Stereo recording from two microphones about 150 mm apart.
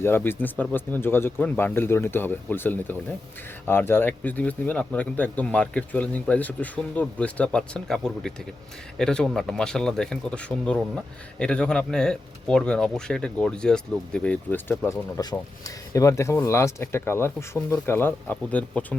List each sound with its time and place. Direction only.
0.0 s speech: 15° left (ahead or behind)